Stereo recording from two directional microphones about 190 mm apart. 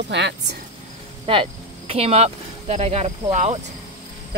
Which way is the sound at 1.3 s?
30° right (ahead or behind).